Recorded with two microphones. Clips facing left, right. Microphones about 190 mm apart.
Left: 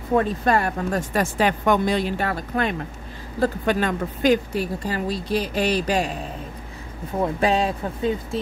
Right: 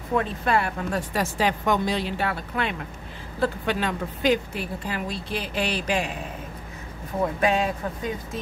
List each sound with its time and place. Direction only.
0.1 s speech: 40° left (ahead or behind)
7.3 s speech: 30° left (ahead or behind)